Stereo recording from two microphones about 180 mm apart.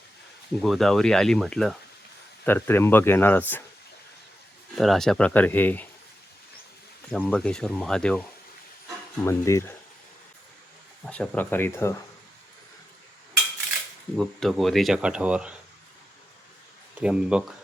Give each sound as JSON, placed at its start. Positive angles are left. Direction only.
{"t": 0.6, "sound": "speech", "side_deg": 0}
{"t": 4.7, "sound": "speech", "side_deg": 0}
{"t": 7.1, "sound": "speech", "side_deg": 5}
{"t": 9.2, "sound": "speech", "side_deg": 15}
{"t": 11.0, "sound": "speech", "side_deg": 5}
{"t": 14.2, "sound": "speech", "side_deg": 0}
{"t": 17.0, "sound": "speech", "side_deg": -5}